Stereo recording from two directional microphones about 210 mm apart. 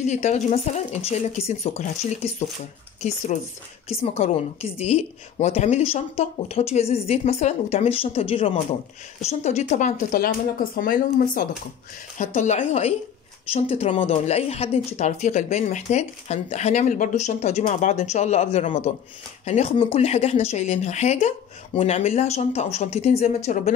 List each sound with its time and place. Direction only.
0.0 s a woman's voice: 30° left (ahead or behind)
3.9 s a woman's voice: 30° left (ahead or behind)